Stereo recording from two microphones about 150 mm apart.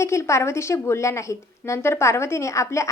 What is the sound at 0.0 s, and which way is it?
A woman's voice, 20° left (ahead or behind).